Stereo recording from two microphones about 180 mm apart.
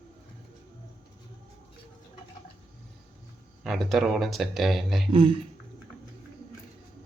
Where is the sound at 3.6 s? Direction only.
Centre (ahead or behind).